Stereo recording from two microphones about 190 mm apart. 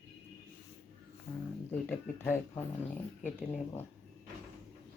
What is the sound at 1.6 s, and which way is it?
Speech, 10° left (ahead or behind).